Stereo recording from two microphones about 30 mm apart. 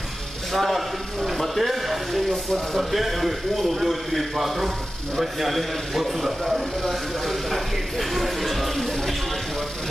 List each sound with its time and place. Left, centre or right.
0.5 s a man's voice: centre